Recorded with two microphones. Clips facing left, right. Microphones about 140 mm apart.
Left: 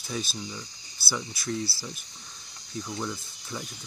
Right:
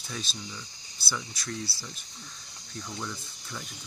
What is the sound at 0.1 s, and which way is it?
Speech, 10° left (ahead or behind).